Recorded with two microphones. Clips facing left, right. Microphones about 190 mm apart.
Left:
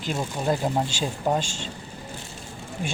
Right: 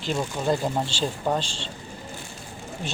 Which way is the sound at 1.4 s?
45° left (ahead or behind).